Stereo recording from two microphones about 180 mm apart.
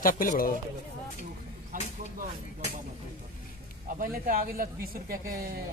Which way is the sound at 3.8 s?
50° right (ahead or behind).